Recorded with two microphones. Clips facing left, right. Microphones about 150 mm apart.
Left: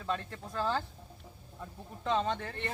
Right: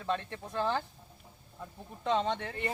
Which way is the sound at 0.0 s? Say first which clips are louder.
Right 2 dB; 20° right (ahead or behind).